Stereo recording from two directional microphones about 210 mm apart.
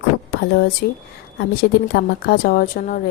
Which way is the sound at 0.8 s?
50° left (ahead or behind).